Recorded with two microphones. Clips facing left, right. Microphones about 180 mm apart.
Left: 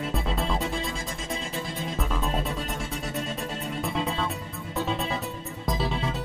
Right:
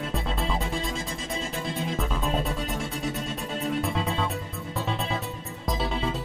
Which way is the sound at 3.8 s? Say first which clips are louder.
Right 1 dB; centre (ahead or behind).